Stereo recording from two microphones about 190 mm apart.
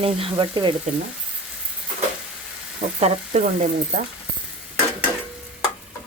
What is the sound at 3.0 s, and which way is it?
A woman's voice, 40° right (ahead or behind).